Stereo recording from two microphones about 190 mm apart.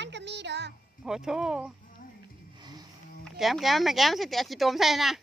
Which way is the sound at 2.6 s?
20° right (ahead or behind).